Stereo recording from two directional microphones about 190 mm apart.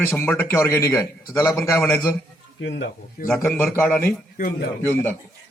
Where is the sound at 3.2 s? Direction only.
10° left (ahead or behind).